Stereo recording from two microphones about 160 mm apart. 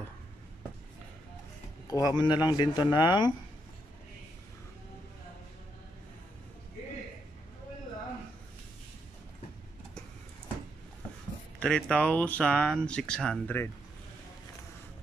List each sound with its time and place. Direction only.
1.9 s speech: 25° left (ahead or behind)
11.6 s speech: 5° left (ahead or behind)